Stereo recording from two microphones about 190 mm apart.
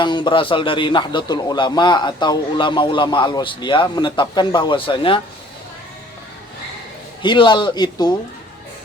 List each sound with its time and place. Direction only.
0.0 s a man's voice: 25° left (ahead or behind)
7.2 s a man's voice: 25° left (ahead or behind)